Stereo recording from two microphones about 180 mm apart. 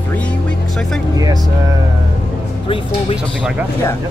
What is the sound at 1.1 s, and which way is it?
Music, 20° right (ahead or behind).